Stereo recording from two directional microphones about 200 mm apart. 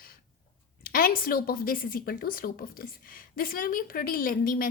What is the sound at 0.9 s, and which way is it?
A woman's voice, 45° left (ahead or behind).